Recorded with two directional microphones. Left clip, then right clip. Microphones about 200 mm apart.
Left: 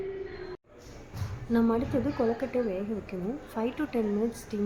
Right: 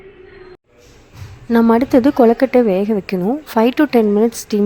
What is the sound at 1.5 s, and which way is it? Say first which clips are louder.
Speech: right 15 dB; 55° right (ahead or behind).